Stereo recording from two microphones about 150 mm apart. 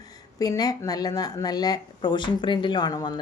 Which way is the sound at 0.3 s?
25° left (ahead or behind).